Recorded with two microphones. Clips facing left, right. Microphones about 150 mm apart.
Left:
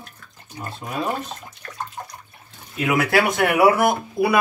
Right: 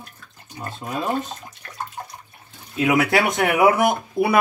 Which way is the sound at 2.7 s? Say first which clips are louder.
Right 1 dB; 20° right (ahead or behind).